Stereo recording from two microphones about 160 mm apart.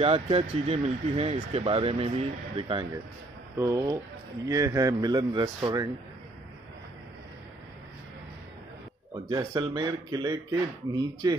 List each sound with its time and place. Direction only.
0.0 s speech: 35° right (ahead or behind)
3.5 s speech: 20° right (ahead or behind)
9.1 s speech: 20° right (ahead or behind)